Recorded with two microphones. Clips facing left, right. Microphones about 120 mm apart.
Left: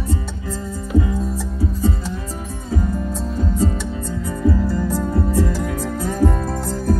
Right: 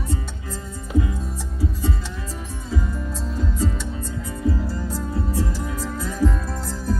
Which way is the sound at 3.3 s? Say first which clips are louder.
Left 4 dB; 45° left (ahead or behind).